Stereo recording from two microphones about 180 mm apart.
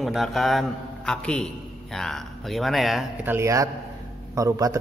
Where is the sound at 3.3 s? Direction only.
15° right (ahead or behind).